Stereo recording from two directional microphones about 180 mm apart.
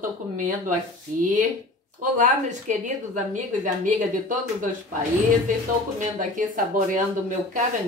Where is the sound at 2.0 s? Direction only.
45° right (ahead or behind).